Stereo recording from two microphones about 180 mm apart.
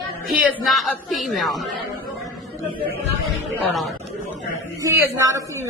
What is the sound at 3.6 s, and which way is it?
Speech, centre (ahead or behind).